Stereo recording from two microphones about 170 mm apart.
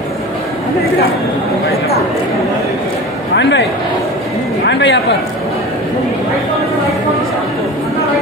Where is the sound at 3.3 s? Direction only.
90° left.